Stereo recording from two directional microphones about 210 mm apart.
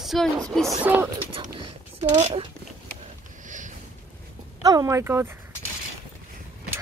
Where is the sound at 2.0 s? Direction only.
30° right (ahead or behind).